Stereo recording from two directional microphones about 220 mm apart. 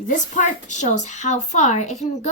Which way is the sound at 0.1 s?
35° left (ahead or behind).